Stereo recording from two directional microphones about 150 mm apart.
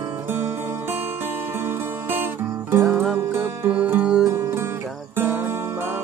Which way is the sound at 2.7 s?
15° right (ahead or behind).